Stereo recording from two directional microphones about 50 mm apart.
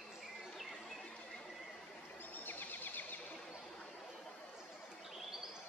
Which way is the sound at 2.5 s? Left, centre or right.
Left.